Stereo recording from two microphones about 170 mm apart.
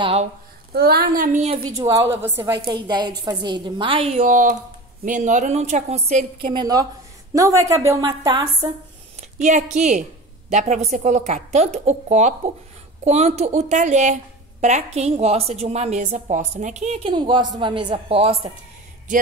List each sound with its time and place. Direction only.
0.0 s speech: 35° right (ahead or behind)
0.7 s a woman's voice: 65° right (ahead or behind)
1.7 s a woman's voice: 20° right (ahead or behind)
2.6 s a woman's voice: 25° right (ahead or behind)
6.5 s a woman's voice: 25° right (ahead or behind)
9.2 s a woman's voice: 45° right (ahead or behind)
17.1 s a woman's voice: 25° right (ahead or behind)